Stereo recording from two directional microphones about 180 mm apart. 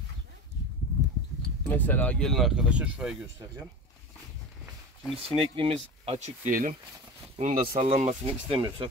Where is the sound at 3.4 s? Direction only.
15° right (ahead or behind).